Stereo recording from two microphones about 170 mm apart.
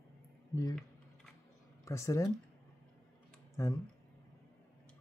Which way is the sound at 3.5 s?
20° left (ahead or behind).